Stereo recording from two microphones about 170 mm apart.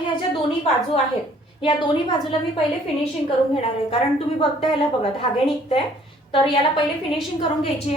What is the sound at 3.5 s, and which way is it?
Speech, 35° left (ahead or behind).